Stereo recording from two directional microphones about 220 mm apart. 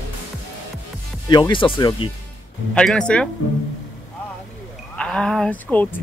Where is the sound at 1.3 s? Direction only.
20° left (ahead or behind).